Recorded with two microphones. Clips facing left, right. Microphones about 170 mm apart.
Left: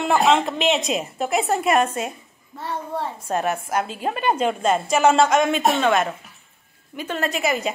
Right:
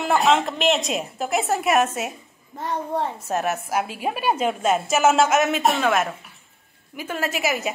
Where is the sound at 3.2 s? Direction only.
5° right (ahead or behind).